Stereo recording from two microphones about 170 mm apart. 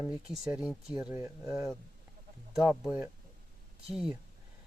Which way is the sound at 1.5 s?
Centre (ahead or behind).